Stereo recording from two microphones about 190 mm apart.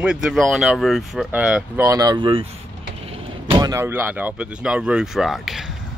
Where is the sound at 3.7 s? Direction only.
10° right (ahead or behind).